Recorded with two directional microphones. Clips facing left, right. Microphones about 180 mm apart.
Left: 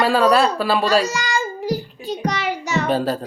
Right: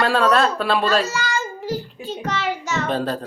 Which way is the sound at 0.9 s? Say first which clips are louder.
Left 2 dB; 15° left (ahead or behind).